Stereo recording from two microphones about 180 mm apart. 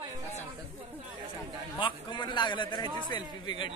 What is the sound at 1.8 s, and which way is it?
A man's voice, 25° left (ahead or behind).